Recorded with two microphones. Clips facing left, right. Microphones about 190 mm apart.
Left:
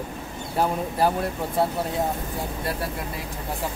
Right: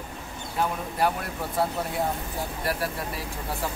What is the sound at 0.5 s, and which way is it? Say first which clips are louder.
Speech: left 4 dB; 30° left (ahead or behind).